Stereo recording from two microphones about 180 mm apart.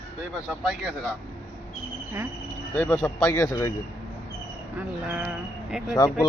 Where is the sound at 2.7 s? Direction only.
10° left (ahead or behind).